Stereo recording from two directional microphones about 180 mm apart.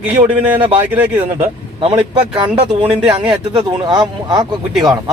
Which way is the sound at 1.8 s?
30° right (ahead or behind).